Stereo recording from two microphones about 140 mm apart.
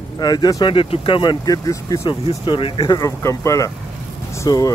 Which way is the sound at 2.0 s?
40° left (ahead or behind).